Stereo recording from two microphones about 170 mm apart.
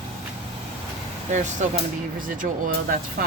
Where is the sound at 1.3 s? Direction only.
45° right (ahead or behind).